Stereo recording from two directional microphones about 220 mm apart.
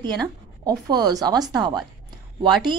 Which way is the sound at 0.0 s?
20° right (ahead or behind).